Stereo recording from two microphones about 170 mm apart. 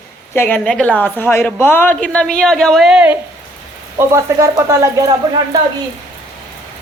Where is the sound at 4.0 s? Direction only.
15° right (ahead or behind).